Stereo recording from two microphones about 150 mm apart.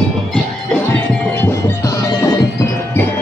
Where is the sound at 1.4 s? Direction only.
20° left (ahead or behind).